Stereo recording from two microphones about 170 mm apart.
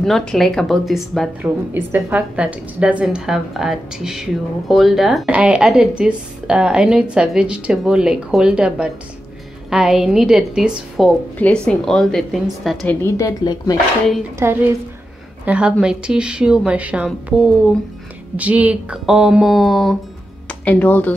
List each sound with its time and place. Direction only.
0.0 s a woman's voice: 5° left (ahead or behind)
1.7 s a woman's voice: 10° right (ahead or behind)
13.0 s speech: 20° left (ahead or behind)
14.4 s a woman's voice: 15° right (ahead or behind); by 21.1 s 10° left (ahead or behind)